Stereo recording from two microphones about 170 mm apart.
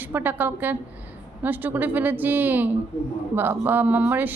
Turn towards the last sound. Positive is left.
turn(degrees=-10)  # may be behind; listen again after turning